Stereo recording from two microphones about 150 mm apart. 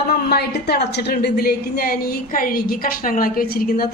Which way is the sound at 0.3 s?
90° left.